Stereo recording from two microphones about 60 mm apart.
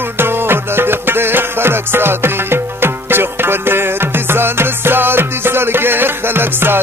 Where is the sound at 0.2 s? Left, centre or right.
Right.